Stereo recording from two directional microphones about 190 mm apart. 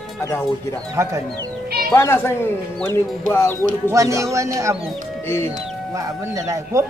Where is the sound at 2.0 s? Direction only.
15° left (ahead or behind).